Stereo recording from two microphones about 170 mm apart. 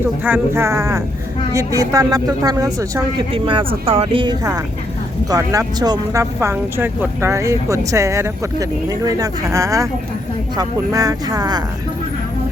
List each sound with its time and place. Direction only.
0.3 s speech: 10° right (ahead or behind)
3.3 s speech: 30° right (ahead or behind)